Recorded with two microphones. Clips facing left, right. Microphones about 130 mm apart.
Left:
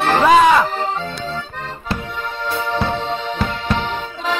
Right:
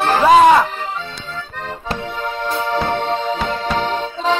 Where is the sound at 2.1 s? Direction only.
45° right (ahead or behind).